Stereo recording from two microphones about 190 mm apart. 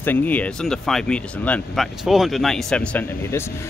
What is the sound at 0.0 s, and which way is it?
Speech, 10° left (ahead or behind).